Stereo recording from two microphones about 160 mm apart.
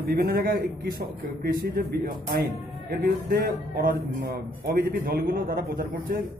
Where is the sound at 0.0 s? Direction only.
70° right (ahead or behind).